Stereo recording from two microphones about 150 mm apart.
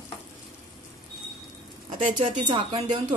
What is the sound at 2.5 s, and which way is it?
Speech, 35° right (ahead or behind).